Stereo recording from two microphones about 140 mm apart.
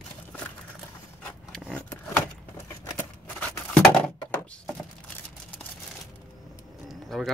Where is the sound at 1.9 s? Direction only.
20° left (ahead or behind).